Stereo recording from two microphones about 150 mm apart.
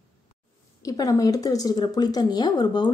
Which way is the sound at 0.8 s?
25° left (ahead or behind).